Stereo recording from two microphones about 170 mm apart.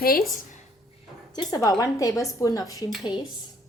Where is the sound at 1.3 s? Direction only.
25° left (ahead or behind).